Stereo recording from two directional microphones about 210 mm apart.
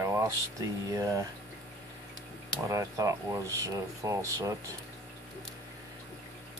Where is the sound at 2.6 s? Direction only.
15° right (ahead or behind).